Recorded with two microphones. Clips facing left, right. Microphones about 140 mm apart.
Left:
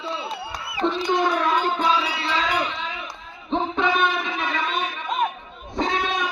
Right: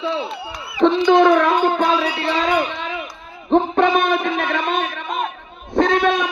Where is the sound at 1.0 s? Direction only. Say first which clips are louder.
Right 9 dB; 70° right (ahead or behind).